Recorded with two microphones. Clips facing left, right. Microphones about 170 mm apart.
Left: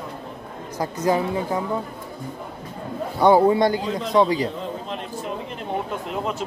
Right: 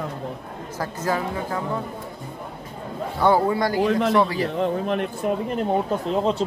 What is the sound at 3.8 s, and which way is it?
Speech, 65° right (ahead or behind).